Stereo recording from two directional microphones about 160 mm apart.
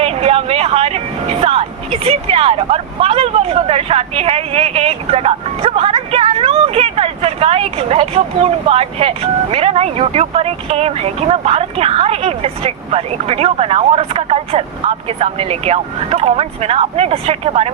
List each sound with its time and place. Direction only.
0.0 s speech: 40° right (ahead or behind)